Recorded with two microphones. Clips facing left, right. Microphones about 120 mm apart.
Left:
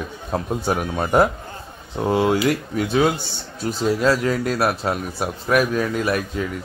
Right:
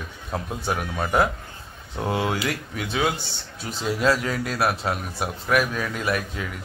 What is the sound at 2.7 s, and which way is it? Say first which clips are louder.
Speech: left 4 dB; 40° left (ahead or behind).